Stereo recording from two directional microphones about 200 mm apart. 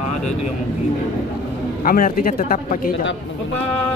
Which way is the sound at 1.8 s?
45° left (ahead or behind).